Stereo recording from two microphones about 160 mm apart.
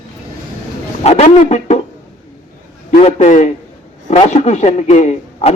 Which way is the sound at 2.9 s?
40° left (ahead or behind).